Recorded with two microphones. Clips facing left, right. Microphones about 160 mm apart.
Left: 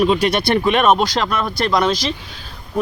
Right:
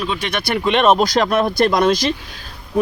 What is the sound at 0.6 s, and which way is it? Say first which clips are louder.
Speech: right 3 dB; 5° left (ahead or behind).